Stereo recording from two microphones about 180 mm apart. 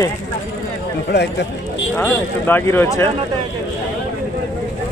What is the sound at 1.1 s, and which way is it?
Speech, 70° left (ahead or behind).